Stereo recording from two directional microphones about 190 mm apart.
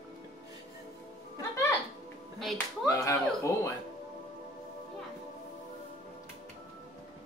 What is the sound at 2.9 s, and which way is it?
Speech, 15° left (ahead or behind).